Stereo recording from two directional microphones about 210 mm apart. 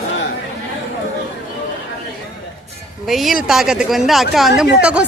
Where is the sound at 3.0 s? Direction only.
Centre (ahead or behind).